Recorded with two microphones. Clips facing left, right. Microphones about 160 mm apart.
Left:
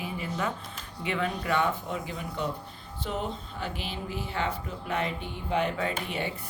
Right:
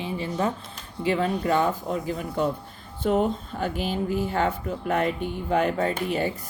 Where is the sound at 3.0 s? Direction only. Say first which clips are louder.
Right 10 dB; 50° right (ahead or behind).